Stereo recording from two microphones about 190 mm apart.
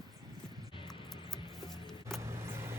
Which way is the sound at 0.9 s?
Centre (ahead or behind).